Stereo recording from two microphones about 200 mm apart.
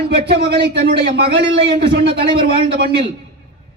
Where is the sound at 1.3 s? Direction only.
25° right (ahead or behind).